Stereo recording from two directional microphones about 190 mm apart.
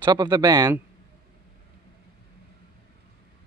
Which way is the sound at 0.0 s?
20° right (ahead or behind).